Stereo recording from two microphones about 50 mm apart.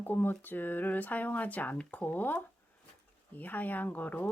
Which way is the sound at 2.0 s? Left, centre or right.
Left.